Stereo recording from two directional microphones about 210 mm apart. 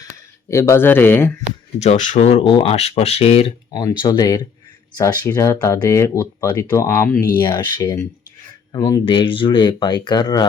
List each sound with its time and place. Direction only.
0.0 s speech: 15° left (ahead or behind)
1.8 s speech: 35° left (ahead or behind)